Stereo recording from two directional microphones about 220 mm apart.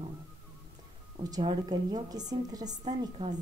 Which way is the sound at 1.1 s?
20° right (ahead or behind).